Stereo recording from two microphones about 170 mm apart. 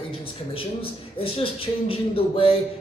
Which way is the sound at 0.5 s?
35° left (ahead or behind).